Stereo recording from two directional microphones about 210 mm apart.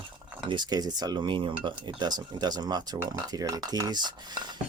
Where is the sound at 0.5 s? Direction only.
20° right (ahead or behind).